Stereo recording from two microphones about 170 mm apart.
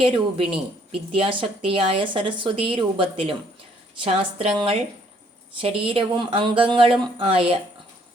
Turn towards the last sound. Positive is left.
turn(degrees=-35)  # may be behind; listen again after turning